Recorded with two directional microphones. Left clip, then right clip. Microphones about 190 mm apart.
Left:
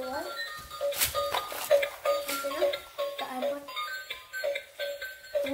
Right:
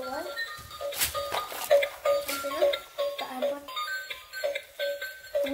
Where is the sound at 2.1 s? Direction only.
Centre (ahead or behind).